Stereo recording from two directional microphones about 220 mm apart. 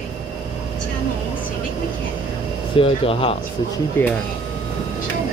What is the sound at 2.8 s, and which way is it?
Speech, 25° left (ahead or behind).